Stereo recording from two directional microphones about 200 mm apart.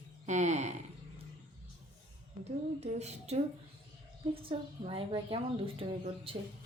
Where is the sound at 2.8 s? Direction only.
35° right (ahead or behind).